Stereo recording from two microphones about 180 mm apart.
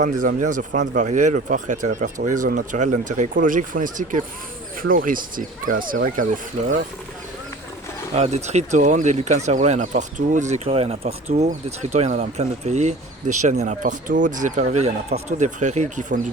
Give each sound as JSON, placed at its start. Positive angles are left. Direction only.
{"t": 0.0, "sound": "speech", "side_deg": -45}
{"t": 8.1, "sound": "speech", "side_deg": -40}